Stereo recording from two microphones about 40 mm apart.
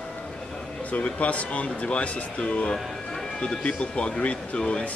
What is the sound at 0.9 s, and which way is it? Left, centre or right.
Speech, left.